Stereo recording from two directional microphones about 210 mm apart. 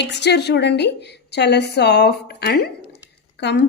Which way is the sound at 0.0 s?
55° left (ahead or behind).